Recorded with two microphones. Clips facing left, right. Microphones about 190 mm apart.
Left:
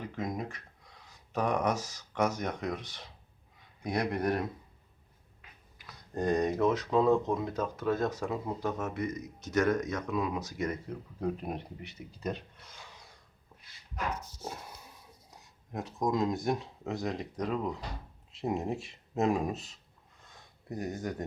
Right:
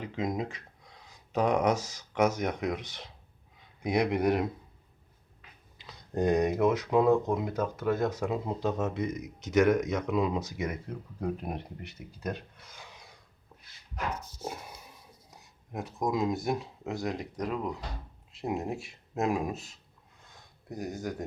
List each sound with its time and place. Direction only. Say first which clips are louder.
0.2 s a sound: right 4 dB; 20° right (ahead or behind)
1.3 s speech: right 4 dB; 15° right (ahead or behind)
5.8 s speech: right 4 dB; 20° right (ahead or behind)
10.8 s speech: even; centre (ahead or behind)
15.7 s speech: even; 5° right (ahead or behind)
20.3 s a sound: left 1 dB; 5° left (ahead or behind)
20.9 s speech: even; 5° right (ahead or behind)